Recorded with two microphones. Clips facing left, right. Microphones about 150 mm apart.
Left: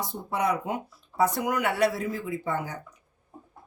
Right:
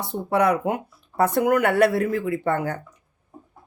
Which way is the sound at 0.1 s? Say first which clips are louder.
Right 9 dB; 65° right (ahead or behind).